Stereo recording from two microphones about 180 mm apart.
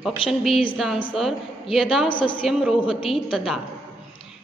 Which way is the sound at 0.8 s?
Centre (ahead or behind).